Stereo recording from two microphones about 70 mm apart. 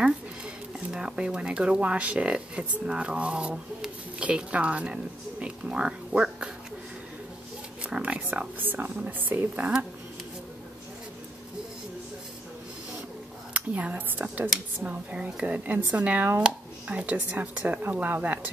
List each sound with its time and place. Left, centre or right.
0.7 s speech: centre
7.8 s a woman's voice: centre
13.5 s a woman's voice: right